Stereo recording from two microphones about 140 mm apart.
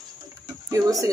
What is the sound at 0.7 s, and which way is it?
Speech, 25° right (ahead or behind).